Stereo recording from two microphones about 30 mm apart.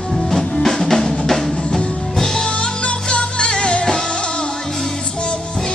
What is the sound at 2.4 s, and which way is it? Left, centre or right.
Music, left.